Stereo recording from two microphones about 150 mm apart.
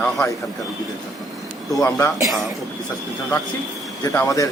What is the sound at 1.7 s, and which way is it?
Speech, 20° left (ahead or behind).